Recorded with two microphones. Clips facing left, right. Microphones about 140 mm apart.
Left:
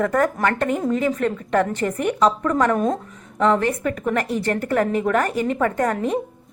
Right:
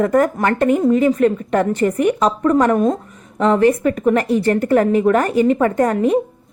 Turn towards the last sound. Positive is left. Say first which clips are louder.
# right 5 dB
turn(degrees=-20)  # may be behind; listen again after turning